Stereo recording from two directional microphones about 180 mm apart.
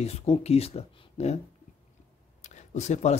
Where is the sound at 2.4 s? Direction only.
40° left (ahead or behind).